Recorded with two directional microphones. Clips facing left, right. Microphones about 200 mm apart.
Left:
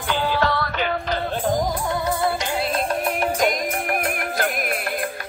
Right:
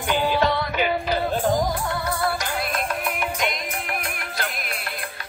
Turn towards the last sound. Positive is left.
turn(degrees=50)  # may be behind; listen again after turning